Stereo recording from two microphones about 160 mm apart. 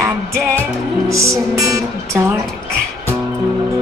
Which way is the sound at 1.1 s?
20° right (ahead or behind).